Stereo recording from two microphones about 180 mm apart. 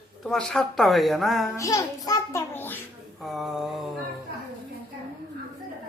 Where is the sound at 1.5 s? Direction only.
20° left (ahead or behind).